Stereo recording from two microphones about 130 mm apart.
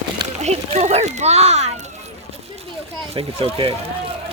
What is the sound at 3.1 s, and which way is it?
Speech, 45° right (ahead or behind).